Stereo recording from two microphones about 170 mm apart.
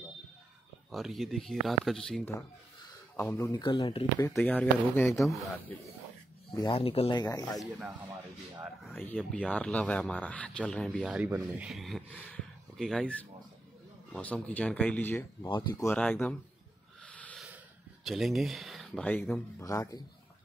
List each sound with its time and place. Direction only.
0.9 s speech: centre (ahead or behind)
3.2 s speech: 15° left (ahead or behind)
4.4 s speech: 10° left (ahead or behind)
5.1 s speech: centre (ahead or behind)
6.5 s speech: 25° left (ahead or behind)
8.9 s speech: 10° left (ahead or behind)
11.1 s speech: 10° right (ahead or behind); by 16.3 s 10° left (ahead or behind)
17.0 s a sound: 5° left (ahead or behind)
18.0 s speech: centre (ahead or behind)
19.6 s speech: 20° left (ahead or behind)